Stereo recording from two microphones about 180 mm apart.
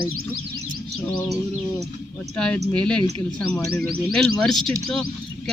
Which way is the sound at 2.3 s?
5° left (ahead or behind).